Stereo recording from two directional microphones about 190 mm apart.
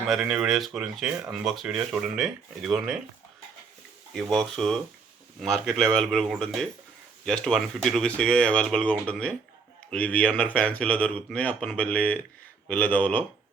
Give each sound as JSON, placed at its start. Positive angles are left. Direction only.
{"t": 0.1, "sound": "speech", "side_deg": 0}
{"t": 4.1, "sound": "speech", "side_deg": 0}